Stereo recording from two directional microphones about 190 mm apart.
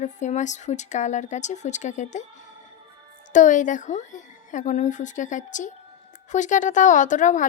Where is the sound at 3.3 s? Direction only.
40° left (ahead or behind).